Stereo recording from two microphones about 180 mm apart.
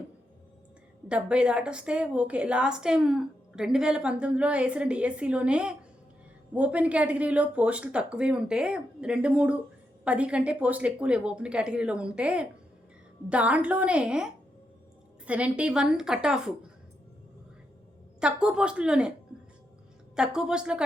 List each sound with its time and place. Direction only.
1.0 s a woman's voice: 5° right (ahead or behind)
15.3 s a woman's voice: 5° right (ahead or behind)
18.2 s a woman's voice: 5° right (ahead or behind)
20.1 s a woman's voice: 5° right (ahead or behind)